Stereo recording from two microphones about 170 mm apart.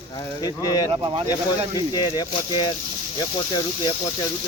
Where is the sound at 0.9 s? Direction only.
30° right (ahead or behind).